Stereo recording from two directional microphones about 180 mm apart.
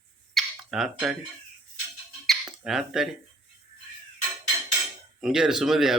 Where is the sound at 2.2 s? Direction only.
Centre (ahead or behind).